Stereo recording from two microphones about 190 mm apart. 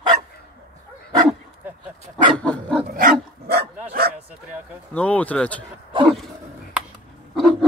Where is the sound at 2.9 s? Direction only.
50° right (ahead or behind).